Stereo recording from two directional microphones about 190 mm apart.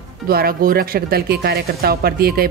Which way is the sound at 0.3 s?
55° right (ahead or behind).